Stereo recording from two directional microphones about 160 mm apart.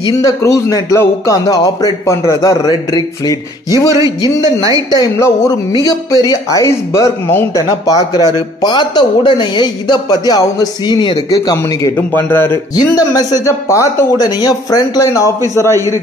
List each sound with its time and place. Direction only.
0.2 s speech: 20° left (ahead or behind)
4.9 s speech: 25° left (ahead or behind)